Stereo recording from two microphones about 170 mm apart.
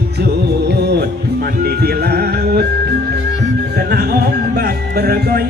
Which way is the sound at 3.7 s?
70° right (ahead or behind).